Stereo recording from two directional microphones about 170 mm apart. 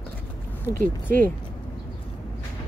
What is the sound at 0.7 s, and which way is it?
Speech, 20° left (ahead or behind).